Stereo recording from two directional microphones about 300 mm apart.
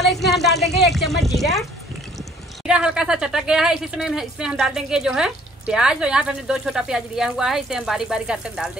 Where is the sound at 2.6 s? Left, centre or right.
Centre.